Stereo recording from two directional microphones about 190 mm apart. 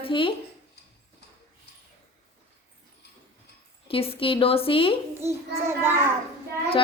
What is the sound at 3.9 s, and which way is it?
A woman's voice, 30° left (ahead or behind).